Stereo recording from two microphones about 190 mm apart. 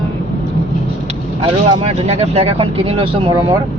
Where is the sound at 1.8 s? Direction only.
35° right (ahead or behind).